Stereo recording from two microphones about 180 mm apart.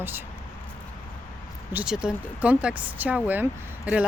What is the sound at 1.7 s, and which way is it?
Speech, 5° right (ahead or behind).